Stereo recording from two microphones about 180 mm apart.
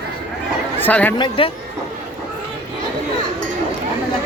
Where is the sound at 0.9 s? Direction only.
10° left (ahead or behind).